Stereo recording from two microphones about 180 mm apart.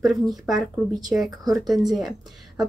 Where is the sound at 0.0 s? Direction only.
Centre (ahead or behind).